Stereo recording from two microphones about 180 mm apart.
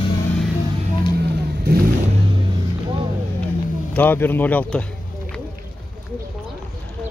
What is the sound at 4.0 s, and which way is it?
Speech, 10° left (ahead or behind).